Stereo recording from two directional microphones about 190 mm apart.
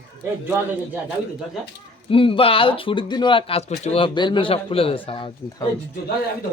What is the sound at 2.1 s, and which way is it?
Speech, 30° left (ahead or behind).